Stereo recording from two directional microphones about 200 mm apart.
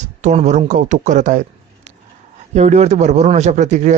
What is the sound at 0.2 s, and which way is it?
A man's voice, 35° right (ahead or behind).